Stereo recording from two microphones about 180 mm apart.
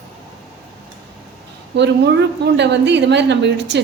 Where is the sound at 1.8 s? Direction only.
75° right (ahead or behind).